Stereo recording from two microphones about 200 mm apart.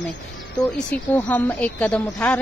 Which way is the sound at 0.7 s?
10° left (ahead or behind).